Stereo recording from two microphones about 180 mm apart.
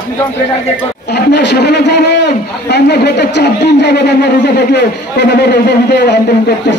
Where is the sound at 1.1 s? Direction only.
65° left (ahead or behind).